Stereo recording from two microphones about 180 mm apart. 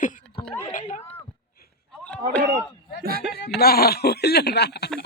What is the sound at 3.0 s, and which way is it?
Speech, 55° right (ahead or behind).